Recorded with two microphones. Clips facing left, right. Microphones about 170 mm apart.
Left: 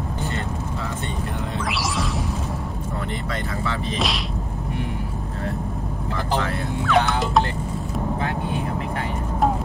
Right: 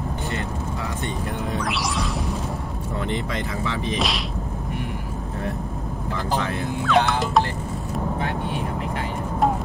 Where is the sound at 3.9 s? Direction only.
Centre (ahead or behind).